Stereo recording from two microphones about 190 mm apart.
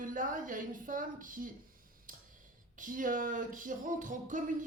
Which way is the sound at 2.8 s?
45° right (ahead or behind).